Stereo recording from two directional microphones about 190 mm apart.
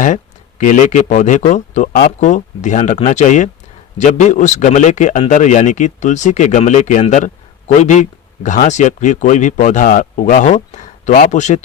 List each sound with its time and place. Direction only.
0.6 s a man's voice: 40° left (ahead or behind)